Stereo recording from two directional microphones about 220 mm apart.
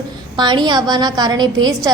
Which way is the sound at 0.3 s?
20° right (ahead or behind).